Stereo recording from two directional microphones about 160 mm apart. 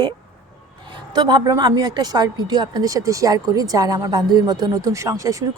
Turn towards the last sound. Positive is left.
turn(degrees=-20)  # may be behind; listen again after turning